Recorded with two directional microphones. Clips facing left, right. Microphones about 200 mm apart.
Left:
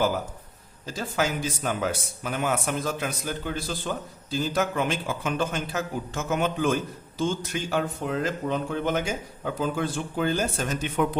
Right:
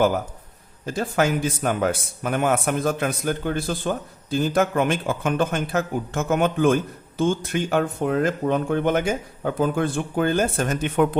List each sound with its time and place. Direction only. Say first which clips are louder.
0.9 s a man's voice: right 6 dB; 55° right (ahead or behind)